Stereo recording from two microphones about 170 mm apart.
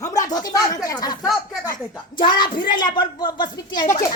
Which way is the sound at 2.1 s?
25° left (ahead or behind).